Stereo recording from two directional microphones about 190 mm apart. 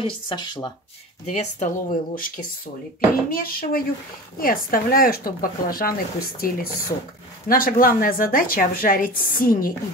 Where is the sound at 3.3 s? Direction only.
50° left (ahead or behind).